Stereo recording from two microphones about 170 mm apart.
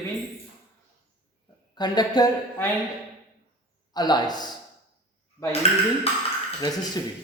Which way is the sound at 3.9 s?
25° left (ahead or behind).